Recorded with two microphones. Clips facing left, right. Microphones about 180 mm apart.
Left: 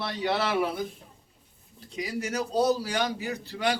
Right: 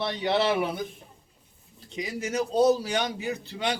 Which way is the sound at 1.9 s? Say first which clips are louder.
Even; 25° right (ahead or behind).